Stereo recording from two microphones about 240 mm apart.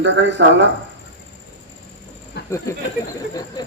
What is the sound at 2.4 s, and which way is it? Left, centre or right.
Cricket, left.